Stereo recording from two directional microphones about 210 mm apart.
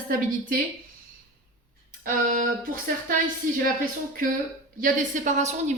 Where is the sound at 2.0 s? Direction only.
40° right (ahead or behind).